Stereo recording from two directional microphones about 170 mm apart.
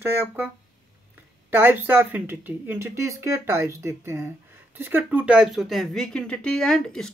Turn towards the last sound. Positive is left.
turn(degrees=5)  # may be behind; listen again after turning